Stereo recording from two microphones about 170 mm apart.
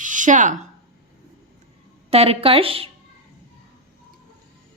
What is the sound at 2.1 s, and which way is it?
Speech, 35° right (ahead or behind).